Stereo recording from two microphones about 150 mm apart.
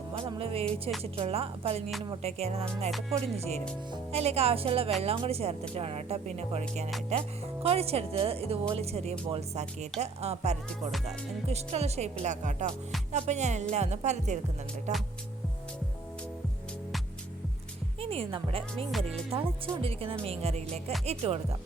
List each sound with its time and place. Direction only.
0.1 s music: 35° right (ahead or behind)
0.6 s music: centre (ahead or behind)
1.0 s speech: 40° right (ahead or behind)
18.0 s speech: 40° right (ahead or behind)
18.9 s music: centre (ahead or behind)
19.3 s speech: 40° right (ahead or behind)